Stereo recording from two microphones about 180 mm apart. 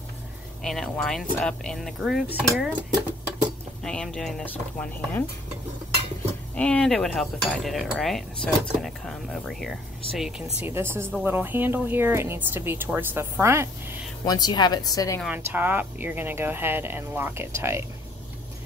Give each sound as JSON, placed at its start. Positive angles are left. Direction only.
{"t": 0.7, "sound": "cutlery", "side_deg": 5}
{"t": 2.2, "sound": "speech", "side_deg": -10}
{"t": 3.8, "sound": "cutlery", "side_deg": 5}
{"t": 6.5, "sound": "cutlery", "side_deg": 5}
{"t": 10.7, "sound": "speech", "side_deg": -15}
{"t": 14.2, "sound": "speech", "side_deg": 20}
{"t": 15.2, "sound": "speech", "side_deg": -10}